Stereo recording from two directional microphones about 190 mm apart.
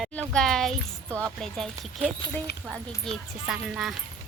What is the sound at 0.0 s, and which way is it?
Speech, 5° left (ahead or behind).